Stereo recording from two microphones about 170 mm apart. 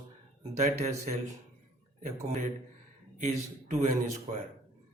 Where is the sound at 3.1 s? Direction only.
45° right (ahead or behind).